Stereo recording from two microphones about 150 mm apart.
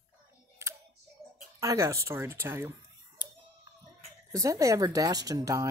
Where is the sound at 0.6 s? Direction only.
20° right (ahead or behind).